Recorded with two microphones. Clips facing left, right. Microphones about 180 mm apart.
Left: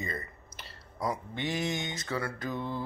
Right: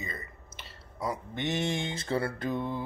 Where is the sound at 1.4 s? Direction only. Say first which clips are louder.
Right 2 dB; 25° right (ahead or behind).